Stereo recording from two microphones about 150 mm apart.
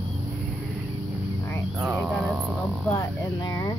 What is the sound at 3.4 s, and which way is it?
Speech, 25° left (ahead or behind).